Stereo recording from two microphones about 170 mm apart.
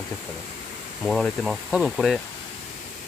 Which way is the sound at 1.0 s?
Centre (ahead or behind).